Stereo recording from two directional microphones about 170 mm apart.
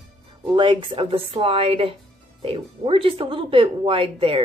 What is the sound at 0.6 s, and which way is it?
A woman's voice, 30° right (ahead or behind).